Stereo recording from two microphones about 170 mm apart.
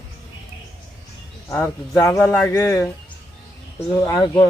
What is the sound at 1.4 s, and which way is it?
Speech, 15° left (ahead or behind).